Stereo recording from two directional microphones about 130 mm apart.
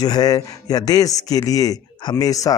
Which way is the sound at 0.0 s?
30° left (ahead or behind).